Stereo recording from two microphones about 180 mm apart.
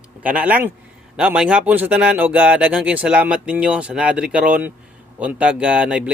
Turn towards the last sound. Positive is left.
turn(degrees=-5)  # may be behind; listen again after turning